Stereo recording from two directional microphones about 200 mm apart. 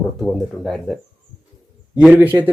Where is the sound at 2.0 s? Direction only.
10° right (ahead or behind).